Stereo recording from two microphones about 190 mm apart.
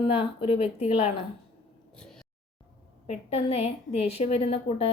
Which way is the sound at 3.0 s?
35° left (ahead or behind).